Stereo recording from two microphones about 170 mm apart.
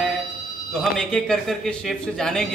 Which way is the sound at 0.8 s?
5° left (ahead or behind).